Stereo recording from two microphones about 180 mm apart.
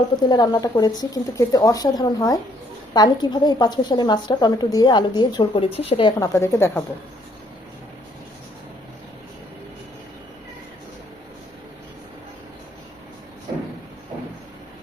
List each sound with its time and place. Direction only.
0.2 s a woman's voice: 25° left (ahead or behind)